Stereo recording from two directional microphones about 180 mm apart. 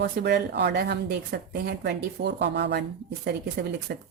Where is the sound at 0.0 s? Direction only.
65° right (ahead or behind).